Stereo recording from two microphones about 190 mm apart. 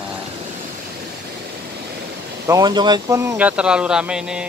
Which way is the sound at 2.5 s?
20° right (ahead or behind).